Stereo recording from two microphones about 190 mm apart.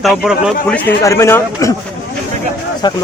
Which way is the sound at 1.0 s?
15° left (ahead or behind).